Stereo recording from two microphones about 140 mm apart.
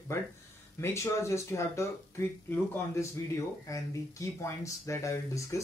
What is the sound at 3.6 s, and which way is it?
Speech, 20° left (ahead or behind).